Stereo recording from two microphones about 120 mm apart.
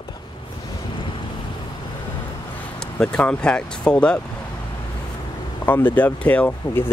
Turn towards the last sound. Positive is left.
turn(degrees=15)  # may be behind; listen again after turning